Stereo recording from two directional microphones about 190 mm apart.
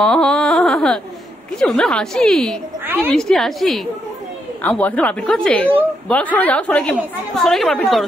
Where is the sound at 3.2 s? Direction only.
Centre (ahead or behind).